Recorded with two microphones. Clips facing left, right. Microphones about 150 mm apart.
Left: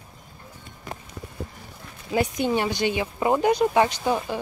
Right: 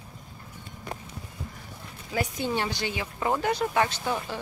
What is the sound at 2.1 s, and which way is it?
Speech, 15° left (ahead or behind).